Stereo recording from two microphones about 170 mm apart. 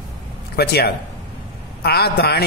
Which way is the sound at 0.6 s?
70° left (ahead or behind).